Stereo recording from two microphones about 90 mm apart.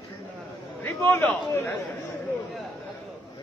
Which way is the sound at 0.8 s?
30° left (ahead or behind).